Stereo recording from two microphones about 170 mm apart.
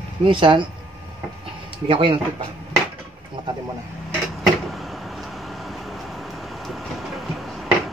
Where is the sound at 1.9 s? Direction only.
30° right (ahead or behind).